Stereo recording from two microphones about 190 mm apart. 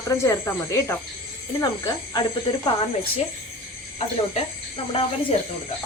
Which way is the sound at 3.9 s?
30° left (ahead or behind).